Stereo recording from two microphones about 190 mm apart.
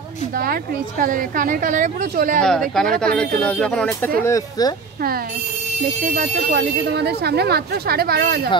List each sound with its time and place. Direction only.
0.4 s a woman's voice: 50° right (ahead or behind)
2.4 s speech: centre (ahead or behind)
4.2 s speech: 20° left (ahead or behind)
6.1 s a woman's voice: 45° right (ahead or behind)
6.9 s speech: 60° right (ahead or behind)